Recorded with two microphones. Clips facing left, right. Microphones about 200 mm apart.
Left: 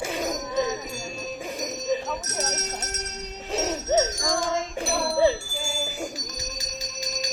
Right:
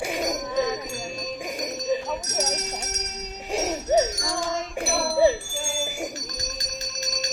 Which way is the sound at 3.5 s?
15° right (ahead or behind).